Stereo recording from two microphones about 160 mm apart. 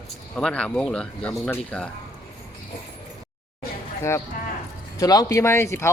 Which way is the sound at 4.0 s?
15° left (ahead or behind).